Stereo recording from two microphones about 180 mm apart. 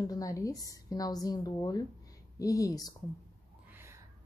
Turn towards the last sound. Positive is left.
turn(degrees=-10)  # may be behind; listen again after turning